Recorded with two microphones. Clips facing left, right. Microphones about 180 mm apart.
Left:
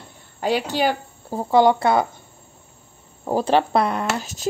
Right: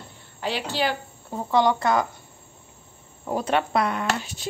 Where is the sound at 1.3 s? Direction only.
30° left (ahead or behind).